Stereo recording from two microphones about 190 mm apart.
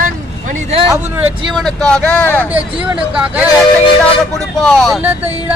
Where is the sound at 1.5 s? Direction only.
Centre (ahead or behind).